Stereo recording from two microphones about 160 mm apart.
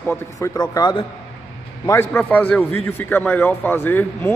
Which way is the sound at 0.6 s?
25° left (ahead or behind).